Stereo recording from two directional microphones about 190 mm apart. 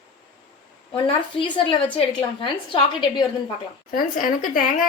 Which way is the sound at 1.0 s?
25° left (ahead or behind).